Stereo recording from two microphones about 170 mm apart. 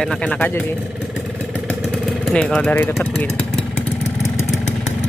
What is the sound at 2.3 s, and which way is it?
Speech, 5° left (ahead or behind).